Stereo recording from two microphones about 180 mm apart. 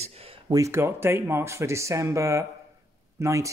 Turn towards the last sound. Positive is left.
turn(degrees=-15)  # may be behind; listen again after turning